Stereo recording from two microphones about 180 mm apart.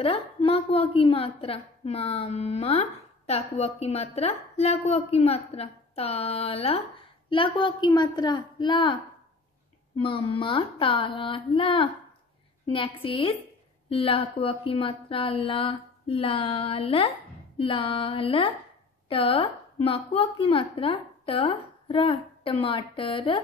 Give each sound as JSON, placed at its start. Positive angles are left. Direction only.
{"t": 0.0, "sound": "a woman's voice", "side_deg": 30}
{"t": 9.9, "sound": "a woman's voice", "side_deg": 30}